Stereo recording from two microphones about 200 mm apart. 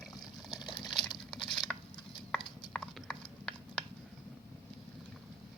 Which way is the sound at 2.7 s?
5° left (ahead or behind).